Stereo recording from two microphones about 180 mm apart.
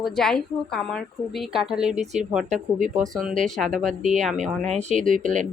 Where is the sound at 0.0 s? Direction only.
Centre (ahead or behind).